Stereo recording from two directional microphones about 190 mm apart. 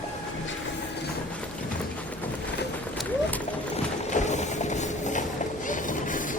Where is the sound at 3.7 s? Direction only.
40° left (ahead or behind).